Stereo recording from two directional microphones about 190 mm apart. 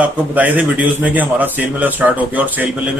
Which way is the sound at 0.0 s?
10° right (ahead or behind).